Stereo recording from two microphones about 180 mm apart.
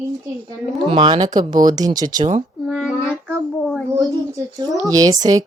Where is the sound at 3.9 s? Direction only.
20° right (ahead or behind).